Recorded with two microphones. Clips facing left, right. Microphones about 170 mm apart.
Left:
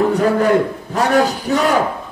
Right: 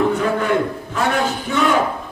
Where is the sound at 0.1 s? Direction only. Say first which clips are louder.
Left 4 dB; 40° left (ahead or behind).